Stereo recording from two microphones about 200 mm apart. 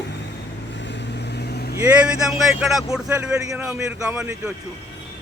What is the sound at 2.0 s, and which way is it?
Speech, 5° right (ahead or behind).